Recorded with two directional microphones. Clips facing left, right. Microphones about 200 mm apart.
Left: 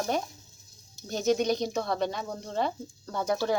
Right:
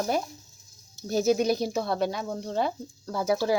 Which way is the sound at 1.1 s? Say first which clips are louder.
Right 3 dB; 5° right (ahead or behind).